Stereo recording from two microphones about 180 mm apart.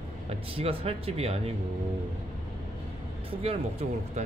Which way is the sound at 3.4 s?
35° right (ahead or behind).